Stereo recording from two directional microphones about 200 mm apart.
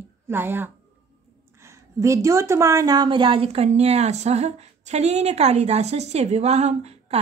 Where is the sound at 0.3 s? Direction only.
10° right (ahead or behind).